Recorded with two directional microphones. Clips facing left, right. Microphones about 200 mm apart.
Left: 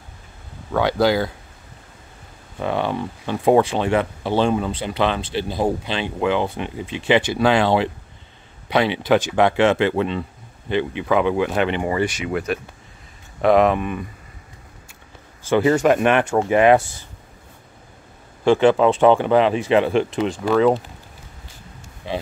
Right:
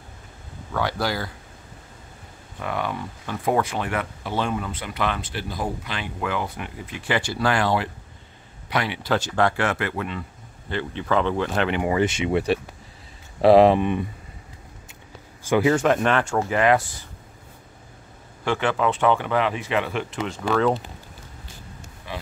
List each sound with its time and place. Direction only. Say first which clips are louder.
0.7 s speech: left 8 dB; 20° left (ahead or behind)
2.6 s speech: left 6 dB; 30° left (ahead or behind); by 11.7 s 10° left (ahead or behind)
11.7 s speech: even; 5° right (ahead or behind)
12.0 s speech: right 1 dB; 25° right (ahead or behind)
15.4 s speech: left 2 dB; 10° right (ahead or behind)
15.7 s speech: left 4 dB; 5° left (ahead or behind)
18.4 s speech: left 8 dB; 30° left (ahead or behind)
20.2 s speech: left 3 dB; 10° left (ahead or behind)
22.0 s a sound: left 8 dB; 25° left (ahead or behind)